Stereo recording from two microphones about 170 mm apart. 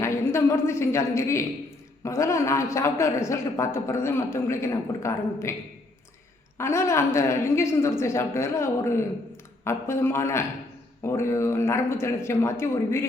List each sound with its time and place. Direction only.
0.0 s a woman's voice: 15° left (ahead or behind)
6.6 s a woman's voice: 15° left (ahead or behind)